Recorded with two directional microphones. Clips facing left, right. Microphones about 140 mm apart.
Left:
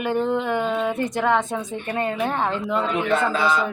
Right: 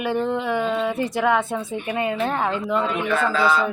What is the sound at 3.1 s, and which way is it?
Speech, 20° left (ahead or behind).